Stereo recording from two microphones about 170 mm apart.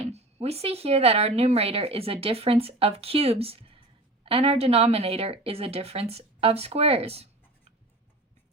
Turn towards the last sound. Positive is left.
turn(degrees=-35)  # may be behind; listen again after turning